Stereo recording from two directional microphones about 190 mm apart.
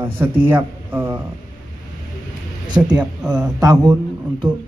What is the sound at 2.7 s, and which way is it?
Speech, centre (ahead or behind).